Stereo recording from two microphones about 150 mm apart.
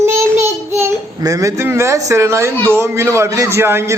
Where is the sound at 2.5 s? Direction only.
15° left (ahead or behind).